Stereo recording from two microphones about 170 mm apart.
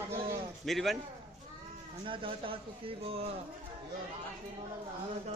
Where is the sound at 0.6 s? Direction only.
Centre (ahead or behind).